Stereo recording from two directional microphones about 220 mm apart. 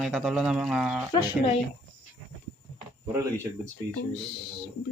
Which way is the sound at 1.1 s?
20° left (ahead or behind).